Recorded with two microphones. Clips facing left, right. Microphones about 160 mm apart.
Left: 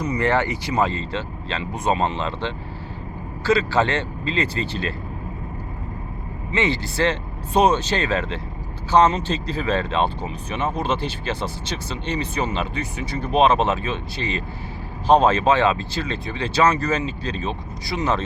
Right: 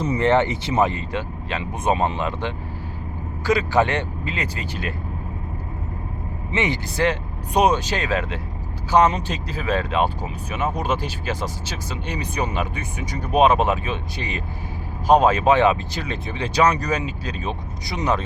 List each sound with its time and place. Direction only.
0.0 s speech: 25° right (ahead or behind)
6.5 s speech: 15° right (ahead or behind)